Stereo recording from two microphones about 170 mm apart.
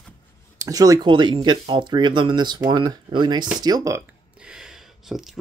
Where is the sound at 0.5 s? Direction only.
20° right (ahead or behind).